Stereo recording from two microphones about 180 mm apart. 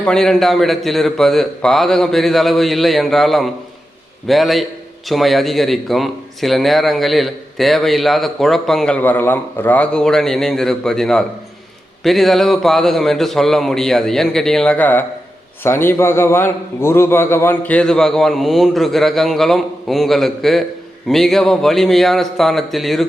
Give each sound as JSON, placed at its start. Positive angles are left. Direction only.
{"t": 0.0, "sound": "speech", "side_deg": 5}